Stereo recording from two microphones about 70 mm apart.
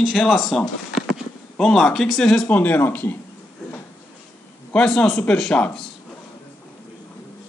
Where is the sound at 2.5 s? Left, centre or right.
Left.